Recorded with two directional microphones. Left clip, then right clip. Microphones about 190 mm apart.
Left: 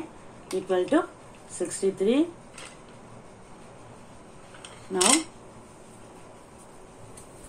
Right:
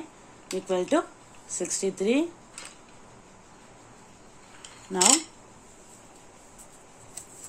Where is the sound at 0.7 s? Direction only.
55° right (ahead or behind).